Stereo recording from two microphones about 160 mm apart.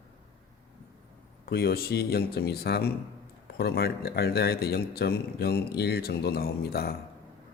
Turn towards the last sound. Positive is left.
turn(degrees=75)  # may be behind; listen again after turning